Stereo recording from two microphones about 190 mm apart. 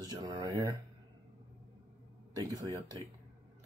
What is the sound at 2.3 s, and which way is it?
Speech, 20° right (ahead or behind).